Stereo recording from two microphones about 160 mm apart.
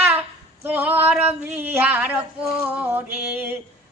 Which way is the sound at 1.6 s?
10° right (ahead or behind).